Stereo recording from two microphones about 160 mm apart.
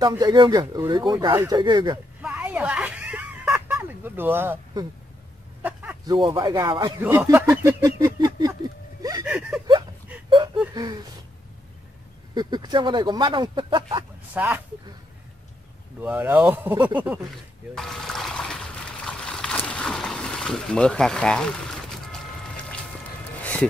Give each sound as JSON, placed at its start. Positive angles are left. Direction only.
{"t": 0.2, "sound": "speech", "side_deg": -25}
{"t": 2.2, "sound": "a sound", "side_deg": -10}
{"t": 5.6, "sound": "a sound", "side_deg": -10}
{"t": 6.0, "sound": "speech", "side_deg": -30}
{"t": 7.0, "sound": "speech", "side_deg": -15}
{"t": 9.0, "sound": "a sound", "side_deg": -25}
{"t": 10.7, "sound": "speech", "side_deg": -25}
{"t": 12.4, "sound": "speech", "side_deg": -25}
{"t": 14.3, "sound": "speech", "side_deg": -10}
{"t": 16.0, "sound": "speech", "side_deg": -10}
{"t": 17.7, "sound": "trickle", "side_deg": 0}
{"t": 23.4, "sound": "a sound", "side_deg": 10}